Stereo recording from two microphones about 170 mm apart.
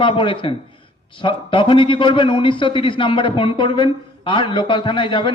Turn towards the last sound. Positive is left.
turn(degrees=30)  # may be behind; listen again after turning